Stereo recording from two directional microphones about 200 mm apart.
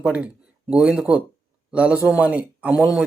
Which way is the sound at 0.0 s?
5° right (ahead or behind).